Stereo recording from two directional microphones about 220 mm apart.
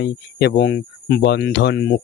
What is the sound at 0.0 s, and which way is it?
Speech, 50° left (ahead or behind).